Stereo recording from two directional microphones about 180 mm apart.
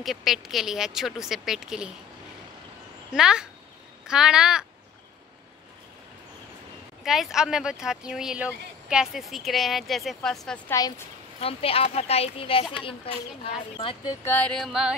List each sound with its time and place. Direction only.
0.0 s speech: centre (ahead or behind)
3.1 s speech: 5° right (ahead or behind)
7.1 s speech: centre (ahead or behind)
10.7 s speech: 15° left (ahead or behind)
11.4 s speech: 30° left (ahead or behind)
14.2 s speech: 10° left (ahead or behind)